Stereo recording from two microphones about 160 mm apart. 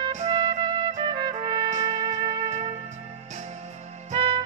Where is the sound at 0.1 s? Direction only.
45° right (ahead or behind).